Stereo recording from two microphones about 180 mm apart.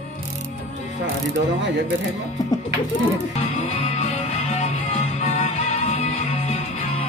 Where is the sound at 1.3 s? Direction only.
80° right.